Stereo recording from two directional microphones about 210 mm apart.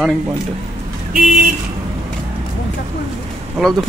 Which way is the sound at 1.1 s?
40° right (ahead or behind).